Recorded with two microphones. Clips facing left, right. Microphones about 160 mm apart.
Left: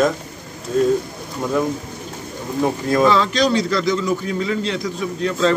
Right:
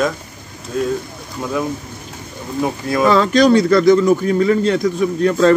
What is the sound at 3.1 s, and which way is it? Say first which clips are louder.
A man's voice: right 5 dB; 50° right (ahead or behind).